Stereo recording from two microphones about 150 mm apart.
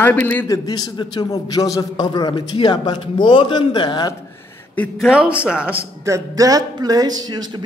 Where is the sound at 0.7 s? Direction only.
30° left (ahead or behind).